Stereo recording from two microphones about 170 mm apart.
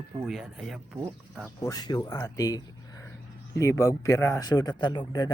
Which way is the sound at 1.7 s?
20° left (ahead or behind).